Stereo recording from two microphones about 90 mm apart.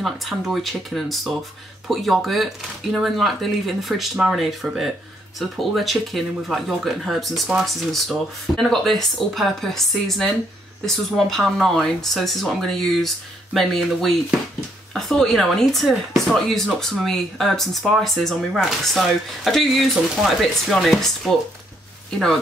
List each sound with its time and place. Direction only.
0.0 s speech: centre (ahead or behind)